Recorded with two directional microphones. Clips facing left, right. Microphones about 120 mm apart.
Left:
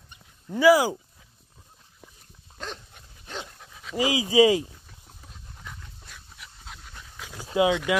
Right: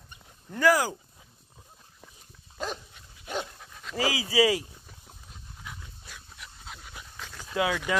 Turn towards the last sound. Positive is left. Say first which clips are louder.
# left 6 dB
turn(degrees=20)  # may be behind; listen again after turning